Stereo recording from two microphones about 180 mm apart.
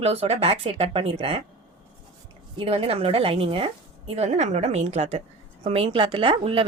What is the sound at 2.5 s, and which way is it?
A woman's voice, 30° right (ahead or behind).